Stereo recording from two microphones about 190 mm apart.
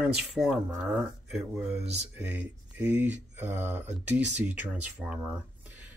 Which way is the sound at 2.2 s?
10° right (ahead or behind).